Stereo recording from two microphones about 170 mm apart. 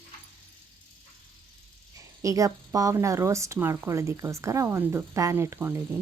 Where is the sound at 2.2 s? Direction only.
20° right (ahead or behind).